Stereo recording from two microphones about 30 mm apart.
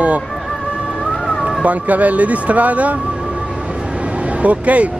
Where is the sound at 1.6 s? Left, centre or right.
Right.